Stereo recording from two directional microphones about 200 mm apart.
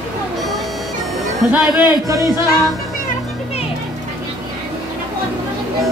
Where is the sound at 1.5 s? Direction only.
10° right (ahead or behind).